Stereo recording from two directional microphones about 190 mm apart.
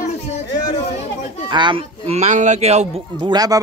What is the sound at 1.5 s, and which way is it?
Speech, 25° right (ahead or behind).